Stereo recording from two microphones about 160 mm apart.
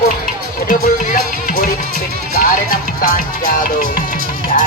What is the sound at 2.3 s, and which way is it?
Speech, 60° left (ahead or behind).